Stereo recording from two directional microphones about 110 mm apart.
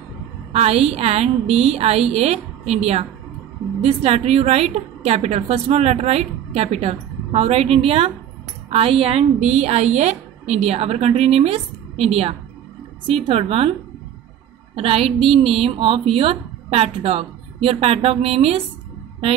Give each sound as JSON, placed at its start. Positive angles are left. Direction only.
{"t": 0.5, "sound": "a woman's voice", "side_deg": -70}
{"t": 14.8, "sound": "a woman's voice", "side_deg": -60}